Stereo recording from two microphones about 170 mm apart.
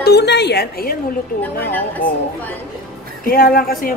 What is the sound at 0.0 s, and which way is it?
Speech, 75° left (ahead or behind).